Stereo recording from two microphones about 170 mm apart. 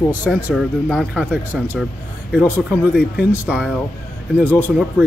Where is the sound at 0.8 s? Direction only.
5° left (ahead or behind).